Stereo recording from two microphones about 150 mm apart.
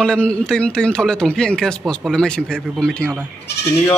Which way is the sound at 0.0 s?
5° left (ahead or behind).